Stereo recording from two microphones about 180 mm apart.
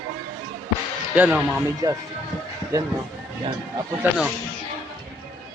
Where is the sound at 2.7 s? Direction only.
20° right (ahead or behind).